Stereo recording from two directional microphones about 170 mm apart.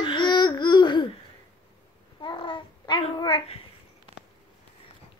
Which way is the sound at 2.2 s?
30° left (ahead or behind).